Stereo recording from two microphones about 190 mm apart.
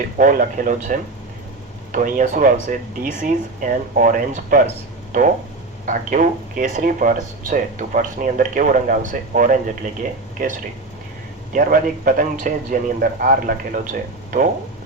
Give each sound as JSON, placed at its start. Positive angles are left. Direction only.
{"t": 0.2, "sound": "speech", "side_deg": -45}
{"t": 5.8, "sound": "speech", "side_deg": -45}